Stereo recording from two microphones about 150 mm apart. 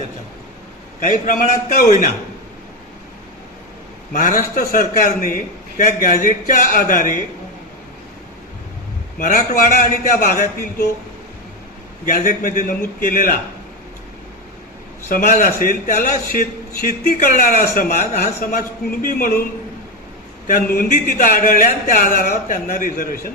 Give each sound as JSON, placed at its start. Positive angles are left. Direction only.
{"t": 0.9, "sound": "a man's voice", "side_deg": 60}
{"t": 4.1, "sound": "a man's voice", "side_deg": 65}
{"t": 9.1, "sound": "a man's voice", "side_deg": 70}
{"t": 10.2, "sound": "speech", "side_deg": 85}
{"t": 12.0, "sound": "a man's voice", "side_deg": 65}
{"t": 15.1, "sound": "a man's voice", "side_deg": 75}
{"t": 17.7, "sound": "a man's voice", "side_deg": 90}
{"t": 20.5, "sound": "a man's voice", "side_deg": 80}